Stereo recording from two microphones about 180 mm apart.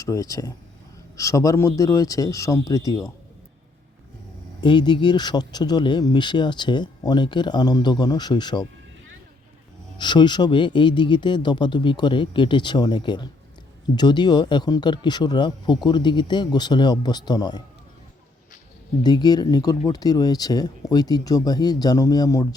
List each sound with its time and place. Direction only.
0.0 s speech: 20° left (ahead or behind)
4.6 s speech: 25° left (ahead or behind)
10.0 s speech: 25° left (ahead or behind)
19.0 s speech: 20° left (ahead or behind)